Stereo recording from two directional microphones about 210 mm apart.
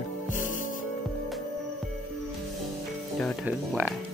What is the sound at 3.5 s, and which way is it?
Speech, 5° right (ahead or behind).